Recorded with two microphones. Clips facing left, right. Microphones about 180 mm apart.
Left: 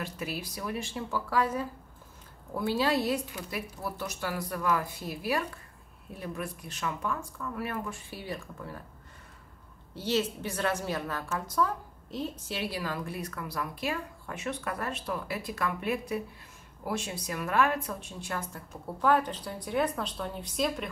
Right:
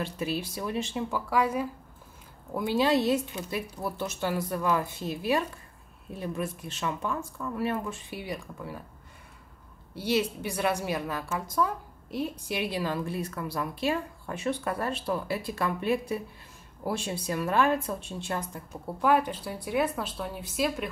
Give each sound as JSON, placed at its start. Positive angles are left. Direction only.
{"t": 0.0, "sound": "a woman's voice", "side_deg": -25}
{"t": 9.9, "sound": "a woman's voice", "side_deg": -10}
{"t": 18.9, "sound": "a woman's voice", "side_deg": -10}